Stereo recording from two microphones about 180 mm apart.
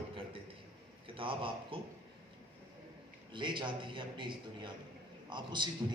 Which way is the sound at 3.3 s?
25° right (ahead or behind).